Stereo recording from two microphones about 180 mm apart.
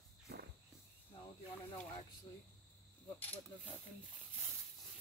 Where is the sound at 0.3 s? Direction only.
65° right (ahead or behind).